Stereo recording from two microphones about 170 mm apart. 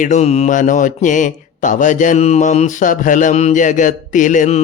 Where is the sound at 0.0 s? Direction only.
45° left (ahead or behind).